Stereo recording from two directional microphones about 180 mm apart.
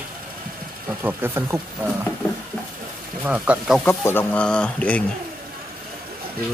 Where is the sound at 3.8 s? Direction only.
10° left (ahead or behind).